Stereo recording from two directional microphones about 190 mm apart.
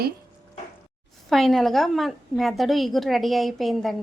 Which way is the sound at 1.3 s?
Centre (ahead or behind).